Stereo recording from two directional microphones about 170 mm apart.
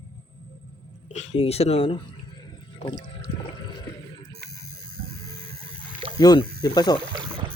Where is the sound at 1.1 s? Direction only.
40° left (ahead or behind).